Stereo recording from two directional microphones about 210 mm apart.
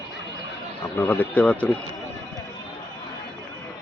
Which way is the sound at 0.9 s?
10° left (ahead or behind).